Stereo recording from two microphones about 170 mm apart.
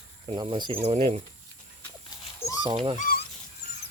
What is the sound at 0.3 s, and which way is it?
Speech, 30° right (ahead or behind).